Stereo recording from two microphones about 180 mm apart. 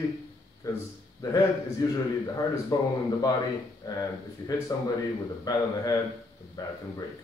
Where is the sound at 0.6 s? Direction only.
15° left (ahead or behind).